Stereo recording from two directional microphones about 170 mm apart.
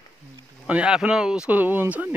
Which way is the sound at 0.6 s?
5° right (ahead or behind).